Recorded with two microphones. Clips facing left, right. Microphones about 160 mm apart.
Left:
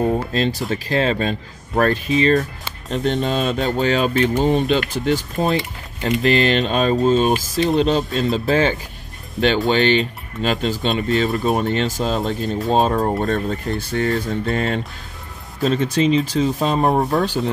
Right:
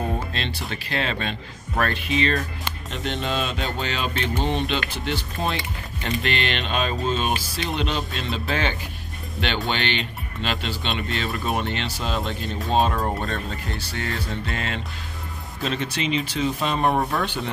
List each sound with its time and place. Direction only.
0.3 s speech: 40° left (ahead or behind)
16.7 s speech: 20° left (ahead or behind)
17.1 s speech: 40° left (ahead or behind)